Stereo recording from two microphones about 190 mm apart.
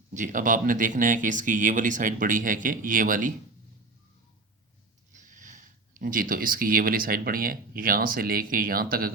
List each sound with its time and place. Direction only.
0.1 s speech: 45° right (ahead or behind)
5.1 s speech: 40° right (ahead or behind)